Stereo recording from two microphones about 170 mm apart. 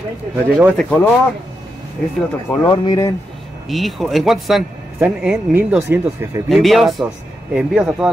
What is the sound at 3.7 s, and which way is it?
Speech, centre (ahead or behind).